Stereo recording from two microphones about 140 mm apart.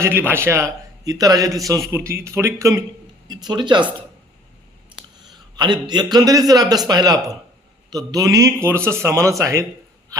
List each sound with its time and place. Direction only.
0.0 s a man's voice: 15° right (ahead or behind)
3.2 s speech: 30° right (ahead or behind)
4.9 s a sound: 35° right (ahead or behind)
5.5 s a man's voice: 30° right (ahead or behind)